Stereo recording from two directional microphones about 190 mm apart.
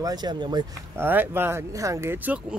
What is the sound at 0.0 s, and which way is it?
Speech, 20° right (ahead or behind).